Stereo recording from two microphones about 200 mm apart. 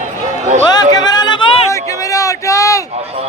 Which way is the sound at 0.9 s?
20° left (ahead or behind).